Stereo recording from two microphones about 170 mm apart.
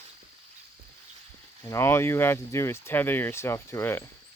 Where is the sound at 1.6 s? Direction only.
15° left (ahead or behind).